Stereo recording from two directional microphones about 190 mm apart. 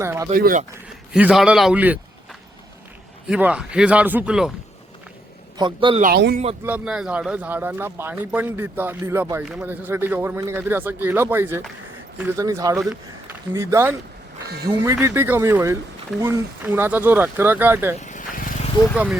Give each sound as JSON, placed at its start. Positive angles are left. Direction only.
{"t": 0.0, "sound": "speech", "side_deg": -15}
{"t": 0.3, "sound": "speech", "side_deg": -50}
{"t": 1.1, "sound": "a man's voice", "side_deg": -5}
{"t": 3.2, "sound": "a man's voice", "side_deg": -5}
{"t": 5.5, "sound": "a man's voice", "side_deg": -25}
{"t": 6.1, "sound": "speech", "side_deg": -60}
{"t": 6.7, "sound": "speech", "side_deg": -5}
{"t": 9.4, "sound": "a man's voice", "side_deg": -5}
{"t": 17.9, "sound": "vehicle", "side_deg": 40}